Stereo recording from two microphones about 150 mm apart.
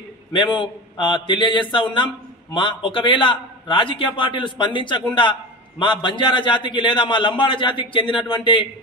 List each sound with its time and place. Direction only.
0.3 s a man's voice: 35° left (ahead or behind)